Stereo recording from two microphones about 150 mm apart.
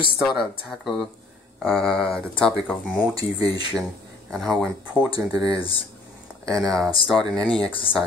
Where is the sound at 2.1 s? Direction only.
5° left (ahead or behind).